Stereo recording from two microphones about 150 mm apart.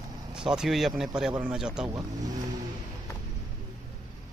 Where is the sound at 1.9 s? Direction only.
25° right (ahead or behind).